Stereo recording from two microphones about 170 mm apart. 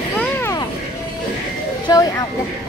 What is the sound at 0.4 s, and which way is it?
Vehicle, 15° left (ahead or behind).